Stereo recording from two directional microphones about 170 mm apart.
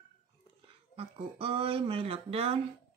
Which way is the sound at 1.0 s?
30° right (ahead or behind).